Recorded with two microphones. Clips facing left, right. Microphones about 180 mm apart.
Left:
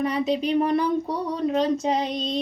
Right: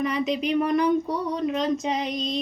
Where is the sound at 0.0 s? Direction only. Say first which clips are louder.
Left 1 dB; 30° left (ahead or behind).